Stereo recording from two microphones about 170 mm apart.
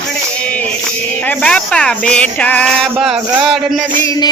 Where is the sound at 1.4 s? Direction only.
5° left (ahead or behind).